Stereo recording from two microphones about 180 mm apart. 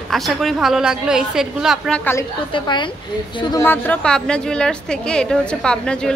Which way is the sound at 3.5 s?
10° left (ahead or behind).